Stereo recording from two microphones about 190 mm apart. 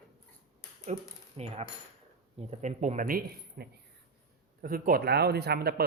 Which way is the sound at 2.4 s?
35° right (ahead or behind).